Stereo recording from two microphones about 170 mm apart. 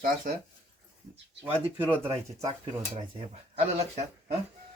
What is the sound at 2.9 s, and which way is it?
Speech, 40° right (ahead or behind).